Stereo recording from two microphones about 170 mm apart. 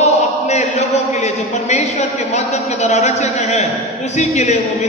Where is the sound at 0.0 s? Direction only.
40° left (ahead or behind).